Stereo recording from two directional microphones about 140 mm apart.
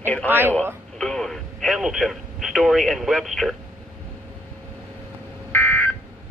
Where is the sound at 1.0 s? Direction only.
5° left (ahead or behind).